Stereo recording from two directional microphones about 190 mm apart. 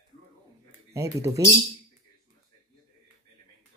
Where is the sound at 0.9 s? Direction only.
15° right (ahead or behind).